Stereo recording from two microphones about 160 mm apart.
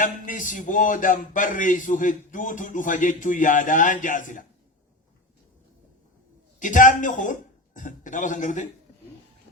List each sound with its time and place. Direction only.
0.0 s speech: 55° left (ahead or behind)
6.6 s speech: 55° left (ahead or behind)